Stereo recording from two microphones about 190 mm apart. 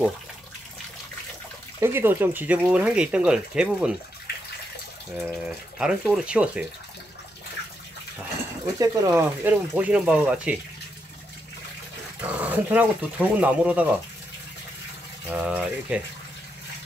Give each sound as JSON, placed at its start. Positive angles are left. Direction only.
{"t": 1.8, "sound": "speech", "side_deg": -10}
{"t": 5.1, "sound": "speech", "side_deg": -5}
{"t": 8.7, "sound": "speech", "side_deg": -15}
{"t": 12.2, "sound": "speech", "side_deg": -10}
{"t": 15.2, "sound": "speech", "side_deg": -5}